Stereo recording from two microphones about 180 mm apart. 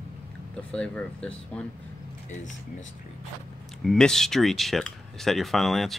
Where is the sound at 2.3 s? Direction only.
45° left (ahead or behind).